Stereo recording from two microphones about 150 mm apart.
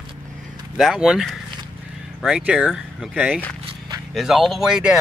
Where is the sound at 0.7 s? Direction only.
5° right (ahead or behind).